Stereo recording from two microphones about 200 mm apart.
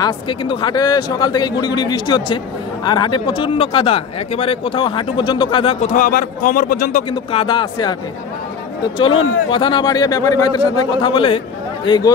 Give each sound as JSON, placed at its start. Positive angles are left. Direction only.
{"t": 0.0, "sound": "speech", "side_deg": 25}
{"t": 7.1, "sound": "speech", "side_deg": 25}
{"t": 8.9, "sound": "speech", "side_deg": 25}